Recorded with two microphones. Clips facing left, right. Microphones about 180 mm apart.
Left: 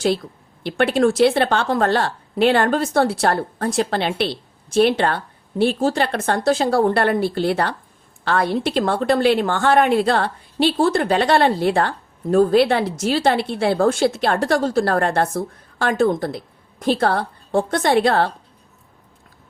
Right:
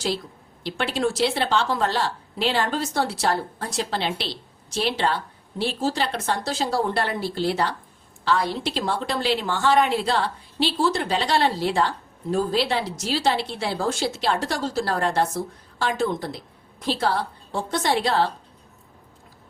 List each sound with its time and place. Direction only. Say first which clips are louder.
0.6 s a woman's voice: left 8 dB; 55° left (ahead or behind)